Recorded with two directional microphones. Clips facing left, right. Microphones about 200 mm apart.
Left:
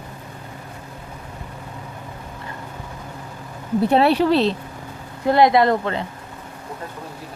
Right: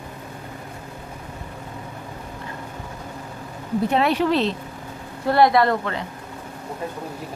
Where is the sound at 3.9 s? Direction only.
35° left (ahead or behind).